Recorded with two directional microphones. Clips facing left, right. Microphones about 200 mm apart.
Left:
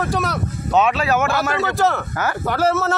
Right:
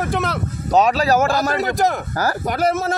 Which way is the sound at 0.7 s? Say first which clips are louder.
Right 2 dB; 35° right (ahead or behind).